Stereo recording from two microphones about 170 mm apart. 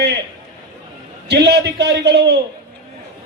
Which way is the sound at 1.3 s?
75° right (ahead or behind).